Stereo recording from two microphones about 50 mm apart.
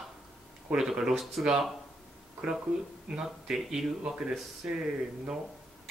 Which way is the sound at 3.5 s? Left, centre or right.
Centre.